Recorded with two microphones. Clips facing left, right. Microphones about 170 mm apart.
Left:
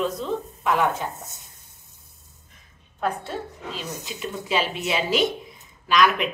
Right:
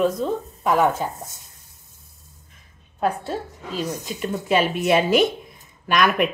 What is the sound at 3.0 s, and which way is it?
A woman's voice, 40° right (ahead or behind).